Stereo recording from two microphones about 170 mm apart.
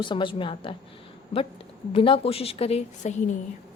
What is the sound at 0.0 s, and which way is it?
Speech, 30° left (ahead or behind).